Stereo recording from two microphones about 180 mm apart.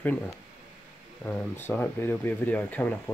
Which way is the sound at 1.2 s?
10° left (ahead or behind).